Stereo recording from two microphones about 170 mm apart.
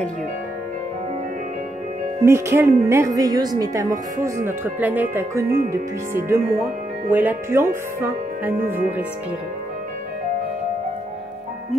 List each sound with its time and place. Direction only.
2.2 s a woman's voice: 15° right (ahead or behind)
7.1 s a woman's voice: 10° right (ahead or behind)